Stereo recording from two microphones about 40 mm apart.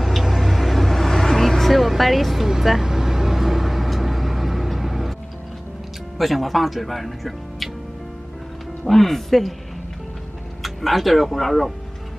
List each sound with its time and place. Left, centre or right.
0.0 s vehicle: centre
6.1 s speech: centre
8.8 s speech: centre
10.6 s speech: centre